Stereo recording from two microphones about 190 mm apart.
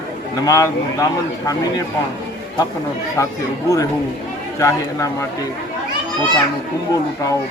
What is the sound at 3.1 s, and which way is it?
Speech, 15° left (ahead or behind).